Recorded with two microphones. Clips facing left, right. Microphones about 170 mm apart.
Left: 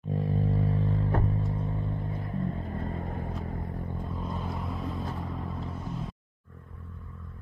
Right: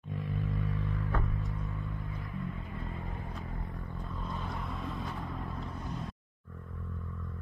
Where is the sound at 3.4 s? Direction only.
35° left (ahead or behind).